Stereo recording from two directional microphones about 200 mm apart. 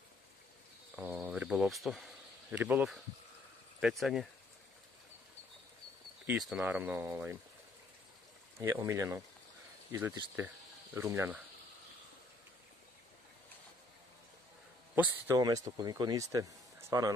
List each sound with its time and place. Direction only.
0.9 s a sound: 10° right (ahead or behind)
2.5 s speech: 5° right (ahead or behind)
6.2 s speech: centre (ahead or behind)
8.5 s speech: 15° right (ahead or behind)
15.0 s speech: 15° right (ahead or behind)